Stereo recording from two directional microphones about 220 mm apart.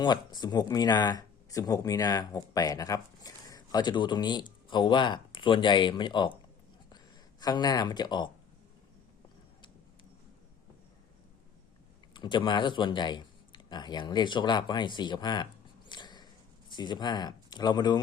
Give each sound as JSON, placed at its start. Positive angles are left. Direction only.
{"t": 0.0, "sound": "speech", "side_deg": 20}
{"t": 12.1, "sound": "speech", "side_deg": 20}
{"t": 15.9, "sound": "a sound", "side_deg": 20}